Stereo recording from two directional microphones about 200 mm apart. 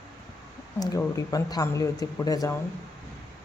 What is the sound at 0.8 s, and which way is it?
A man's voice, 15° left (ahead or behind).